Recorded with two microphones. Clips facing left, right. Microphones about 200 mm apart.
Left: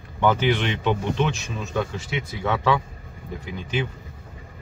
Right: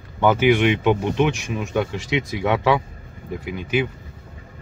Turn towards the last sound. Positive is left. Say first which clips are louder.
# right 5 dB
turn(degrees=-10)  # may be behind; listen again after turning